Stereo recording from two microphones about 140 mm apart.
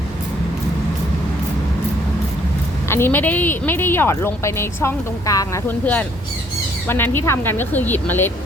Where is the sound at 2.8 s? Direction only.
15° left (ahead or behind).